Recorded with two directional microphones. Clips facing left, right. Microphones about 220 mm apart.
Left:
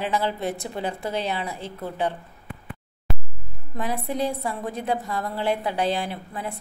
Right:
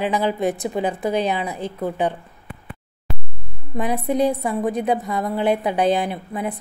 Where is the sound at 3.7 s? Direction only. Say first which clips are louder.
Right 6 dB; 20° right (ahead or behind).